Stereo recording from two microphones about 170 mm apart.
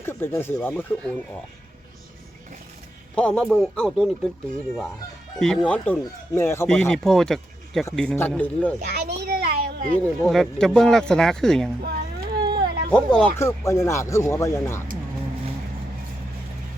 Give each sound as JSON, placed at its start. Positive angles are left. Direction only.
{"t": 0.0, "sound": "speech", "side_deg": 15}
{"t": 3.2, "sound": "speech", "side_deg": 5}
{"t": 5.4, "sound": "speech", "side_deg": 5}
{"t": 6.7, "sound": "speech", "side_deg": 5}
{"t": 8.8, "sound": "a sound", "side_deg": -70}
{"t": 10.2, "sound": "speech", "side_deg": 0}
{"t": 11.8, "sound": "a sound", "side_deg": -70}
{"t": 12.9, "sound": "speech", "side_deg": 5}